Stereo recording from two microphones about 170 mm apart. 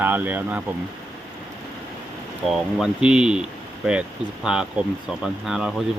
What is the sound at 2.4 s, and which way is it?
Speech, centre (ahead or behind).